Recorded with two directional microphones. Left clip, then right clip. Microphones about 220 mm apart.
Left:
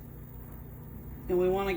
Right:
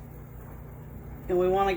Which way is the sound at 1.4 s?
40° left (ahead or behind).